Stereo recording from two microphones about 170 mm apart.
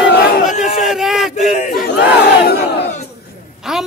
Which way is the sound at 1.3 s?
45° left (ahead or behind).